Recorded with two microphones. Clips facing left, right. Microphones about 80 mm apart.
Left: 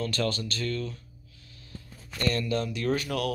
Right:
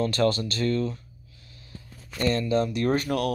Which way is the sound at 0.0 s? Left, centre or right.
Right.